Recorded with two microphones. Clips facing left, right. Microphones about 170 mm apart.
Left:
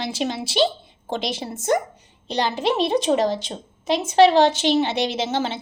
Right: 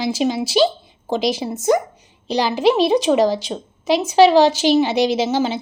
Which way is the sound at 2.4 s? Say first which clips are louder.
Right 6 dB; 90° right.